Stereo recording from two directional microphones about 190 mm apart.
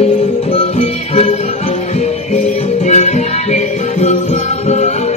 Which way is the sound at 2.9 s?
35° left (ahead or behind).